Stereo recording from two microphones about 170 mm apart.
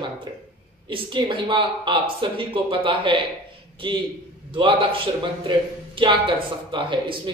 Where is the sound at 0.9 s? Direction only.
30° right (ahead or behind).